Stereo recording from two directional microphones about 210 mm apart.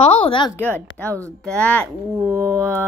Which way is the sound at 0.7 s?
5° left (ahead or behind).